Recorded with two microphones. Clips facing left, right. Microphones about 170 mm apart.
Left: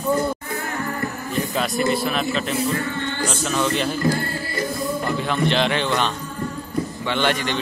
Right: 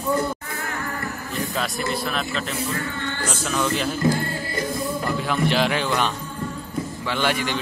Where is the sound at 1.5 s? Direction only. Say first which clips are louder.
Left 6 dB; centre (ahead or behind).